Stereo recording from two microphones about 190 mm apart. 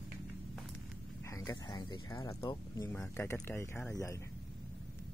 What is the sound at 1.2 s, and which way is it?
Speech, 15° left (ahead or behind).